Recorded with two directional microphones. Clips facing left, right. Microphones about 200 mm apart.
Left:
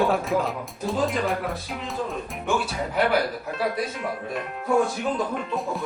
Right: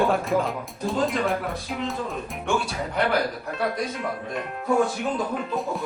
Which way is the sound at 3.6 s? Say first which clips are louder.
Even; centre (ahead or behind).